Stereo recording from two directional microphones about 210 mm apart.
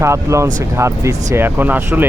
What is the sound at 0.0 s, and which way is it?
Speech, 15° right (ahead or behind).